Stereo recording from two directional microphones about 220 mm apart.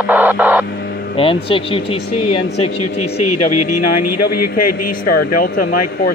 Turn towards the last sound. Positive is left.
turn(degrees=45)  # may be behind; listen again after turning